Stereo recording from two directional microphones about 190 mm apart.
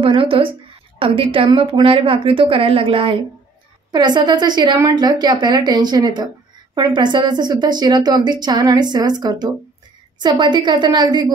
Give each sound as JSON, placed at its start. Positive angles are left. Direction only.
{"t": 0.0, "sound": "a woman's voice", "side_deg": -30}